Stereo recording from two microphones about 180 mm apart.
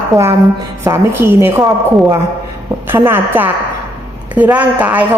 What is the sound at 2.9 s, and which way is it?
Speech, 10° right (ahead or behind).